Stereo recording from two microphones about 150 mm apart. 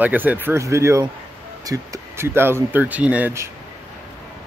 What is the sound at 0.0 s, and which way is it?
Speech, 10° right (ahead or behind).